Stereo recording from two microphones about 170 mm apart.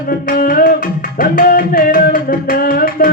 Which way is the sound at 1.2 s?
55° left (ahead or behind).